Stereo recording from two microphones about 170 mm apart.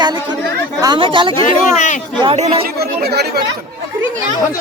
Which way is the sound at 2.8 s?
70° right (ahead or behind).